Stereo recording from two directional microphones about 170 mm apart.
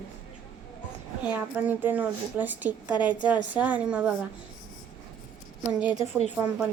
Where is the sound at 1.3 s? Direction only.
10° right (ahead or behind).